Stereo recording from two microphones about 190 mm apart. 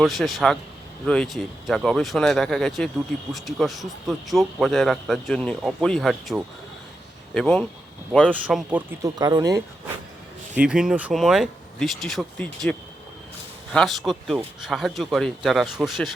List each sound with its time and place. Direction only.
0.0 s speech: centre (ahead or behind)
8.3 s speech: 5° right (ahead or behind)
10.5 s speech: 5° right (ahead or behind)
13.7 s speech: centre (ahead or behind)